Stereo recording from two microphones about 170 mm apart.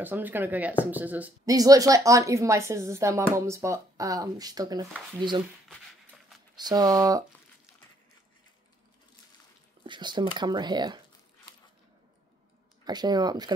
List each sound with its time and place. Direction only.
0.0 s a woman's voice: 10° right (ahead or behind)
1.4 s a woman's voice: 20° right (ahead or behind)
6.5 s speech: 25° right (ahead or behind)
9.8 s speech: 25° right (ahead or behind)
12.8 s speech: 25° right (ahead or behind)